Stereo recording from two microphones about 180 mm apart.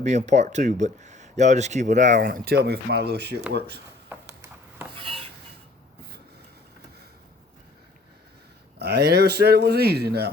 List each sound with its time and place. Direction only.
0.0 s speech: 40° right (ahead or behind); by 3.4 s 65° right (ahead or behind)
4.1 s a sound: 10° right (ahead or behind)
4.9 s dishes: 30° right (ahead or behind)
8.8 s a man's voice: 65° right (ahead or behind)